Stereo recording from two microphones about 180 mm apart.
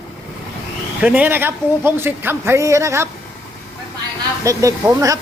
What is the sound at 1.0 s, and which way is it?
Speech, 10° right (ahead or behind).